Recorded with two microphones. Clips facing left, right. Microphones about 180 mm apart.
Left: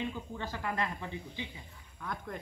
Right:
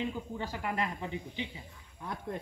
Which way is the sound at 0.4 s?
15° right (ahead or behind).